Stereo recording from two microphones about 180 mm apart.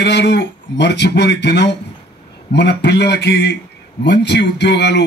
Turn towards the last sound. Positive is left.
turn(degrees=70)  # may be behind; listen again after turning